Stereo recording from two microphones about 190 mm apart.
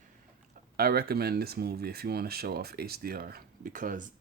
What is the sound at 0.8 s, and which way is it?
Speech, 55° right (ahead or behind).